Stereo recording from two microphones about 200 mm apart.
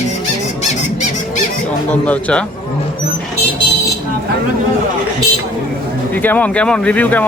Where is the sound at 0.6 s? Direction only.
35° left (ahead or behind).